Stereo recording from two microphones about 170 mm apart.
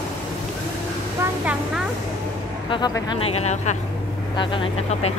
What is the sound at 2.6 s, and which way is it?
Speech, 25° left (ahead or behind).